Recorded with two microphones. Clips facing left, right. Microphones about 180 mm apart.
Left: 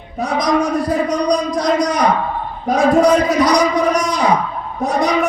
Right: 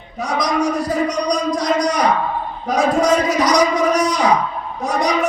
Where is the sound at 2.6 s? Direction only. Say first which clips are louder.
Left 4 dB; 60° left (ahead or behind).